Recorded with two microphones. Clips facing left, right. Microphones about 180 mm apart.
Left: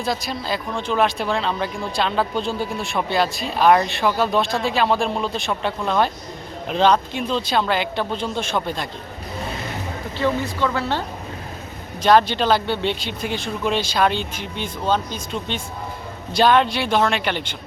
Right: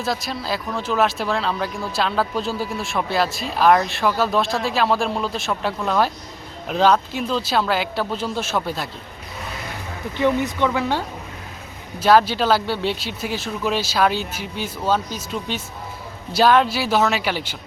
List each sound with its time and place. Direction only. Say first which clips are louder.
0.0 s speech: even; centre (ahead or behind)
10.2 s speech: right 2 dB; 20° right (ahead or behind)
12.0 s speech: even; 5° right (ahead or behind)